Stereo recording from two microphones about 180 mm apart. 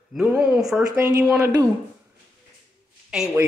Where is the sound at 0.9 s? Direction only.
15° right (ahead or behind).